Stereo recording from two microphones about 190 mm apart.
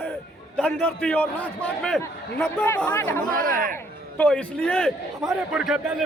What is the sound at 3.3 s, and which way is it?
Speech, 45° right (ahead or behind).